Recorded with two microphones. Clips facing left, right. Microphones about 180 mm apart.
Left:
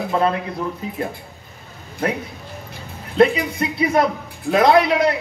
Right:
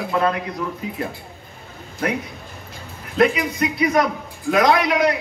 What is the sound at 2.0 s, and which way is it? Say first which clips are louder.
A man's voice: left 1 dB; 25° left (ahead or behind).